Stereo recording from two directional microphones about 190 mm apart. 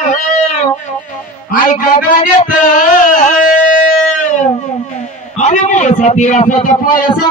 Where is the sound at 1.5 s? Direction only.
45° left (ahead or behind).